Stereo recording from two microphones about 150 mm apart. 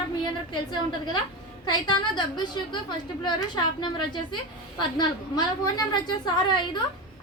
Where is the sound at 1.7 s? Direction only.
30° left (ahead or behind).